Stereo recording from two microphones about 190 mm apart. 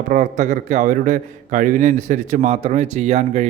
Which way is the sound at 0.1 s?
40° right (ahead or behind).